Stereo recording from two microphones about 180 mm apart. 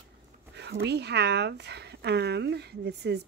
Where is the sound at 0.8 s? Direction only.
65° right (ahead or behind).